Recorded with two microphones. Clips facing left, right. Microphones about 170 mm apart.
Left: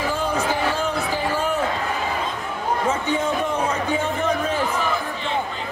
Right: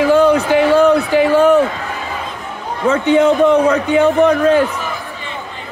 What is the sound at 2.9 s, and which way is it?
A man's voice, 70° right (ahead or behind).